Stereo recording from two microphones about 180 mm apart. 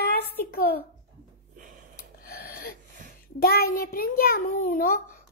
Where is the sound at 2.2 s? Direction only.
55° left (ahead or behind).